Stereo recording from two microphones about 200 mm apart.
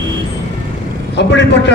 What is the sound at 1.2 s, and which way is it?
Speech, 60° left (ahead or behind).